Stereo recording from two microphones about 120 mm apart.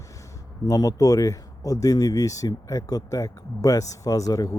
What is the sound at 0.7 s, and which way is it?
Speech, 30° left (ahead or behind).